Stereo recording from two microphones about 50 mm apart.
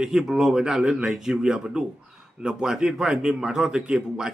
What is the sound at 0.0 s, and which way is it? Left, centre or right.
A man's voice, centre.